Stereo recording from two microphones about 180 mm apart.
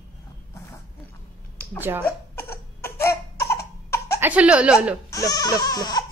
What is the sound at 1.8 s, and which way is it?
Speech, 10° right (ahead or behind).